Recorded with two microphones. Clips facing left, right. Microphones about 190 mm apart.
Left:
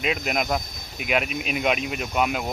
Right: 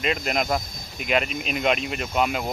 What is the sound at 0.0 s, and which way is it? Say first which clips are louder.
Speech: right 1 dB; 5° left (ahead or behind).